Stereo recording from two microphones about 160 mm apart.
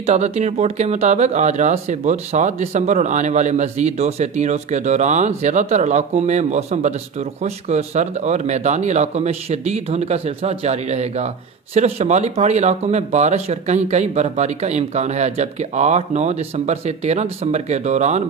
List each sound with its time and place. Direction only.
0.0 s speech: 45° right (ahead or behind)